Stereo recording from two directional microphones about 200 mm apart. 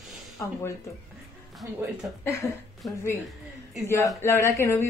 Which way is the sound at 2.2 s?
15° left (ahead or behind).